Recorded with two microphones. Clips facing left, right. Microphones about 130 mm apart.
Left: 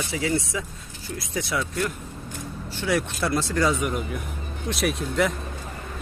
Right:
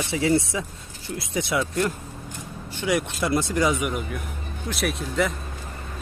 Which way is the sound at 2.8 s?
15° right (ahead or behind).